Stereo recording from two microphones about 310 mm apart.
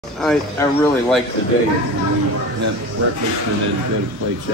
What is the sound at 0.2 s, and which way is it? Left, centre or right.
Speech, centre.